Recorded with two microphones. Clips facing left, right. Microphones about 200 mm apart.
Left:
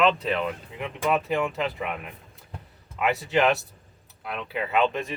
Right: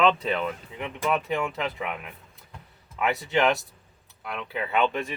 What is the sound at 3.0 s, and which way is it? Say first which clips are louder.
Speech: left 1 dB; centre (ahead or behind).